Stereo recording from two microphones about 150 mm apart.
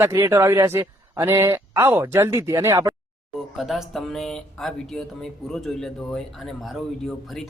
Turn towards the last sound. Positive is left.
turn(degrees=0)  # may be behind; listen again after turning